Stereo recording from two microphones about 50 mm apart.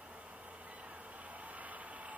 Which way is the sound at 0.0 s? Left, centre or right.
Right.